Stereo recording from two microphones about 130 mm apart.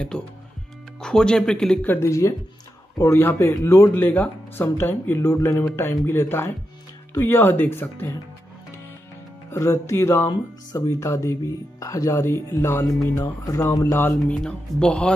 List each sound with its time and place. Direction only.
1.0 s speech: 5° left (ahead or behind)
7.2 s speech: 15° left (ahead or behind)
9.5 s speech: 20° left (ahead or behind)
14.0 s speech: 10° left (ahead or behind)